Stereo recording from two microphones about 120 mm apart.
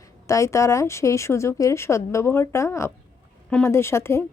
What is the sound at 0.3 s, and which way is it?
A woman's voice, 25° left (ahead or behind).